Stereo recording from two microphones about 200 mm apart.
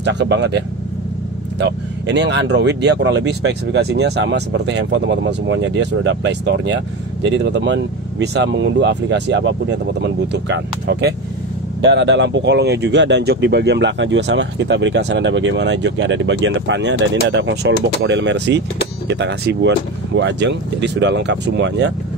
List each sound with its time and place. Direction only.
0.0 s speech: 60° right (ahead or behind)